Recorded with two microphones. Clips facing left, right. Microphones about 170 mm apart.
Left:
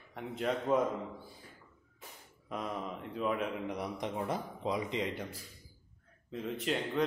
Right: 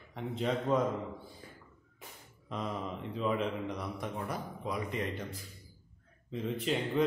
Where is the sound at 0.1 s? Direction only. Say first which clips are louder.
Right 1 dB; 5° left (ahead or behind).